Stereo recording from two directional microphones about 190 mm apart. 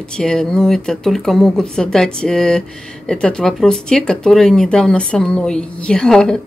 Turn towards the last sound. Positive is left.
turn(degrees=5)  # may be behind; listen again after turning